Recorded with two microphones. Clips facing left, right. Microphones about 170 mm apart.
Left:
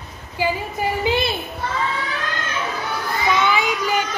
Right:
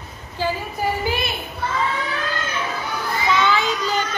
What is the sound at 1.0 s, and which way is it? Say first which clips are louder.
Speech: left 4 dB; 25° left (ahead or behind).